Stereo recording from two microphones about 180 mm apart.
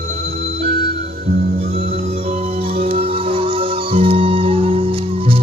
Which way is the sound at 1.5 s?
35° right (ahead or behind).